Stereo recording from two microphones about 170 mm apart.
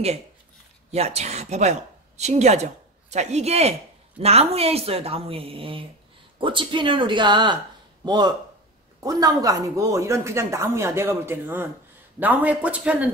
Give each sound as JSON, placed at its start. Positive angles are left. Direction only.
{"t": 0.9, "sound": "a woman's voice", "side_deg": -40}